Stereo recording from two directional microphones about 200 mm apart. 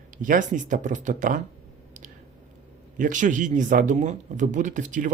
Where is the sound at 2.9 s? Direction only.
40° right (ahead or behind).